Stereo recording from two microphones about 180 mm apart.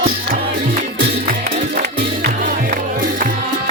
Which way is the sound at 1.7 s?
60° right (ahead or behind).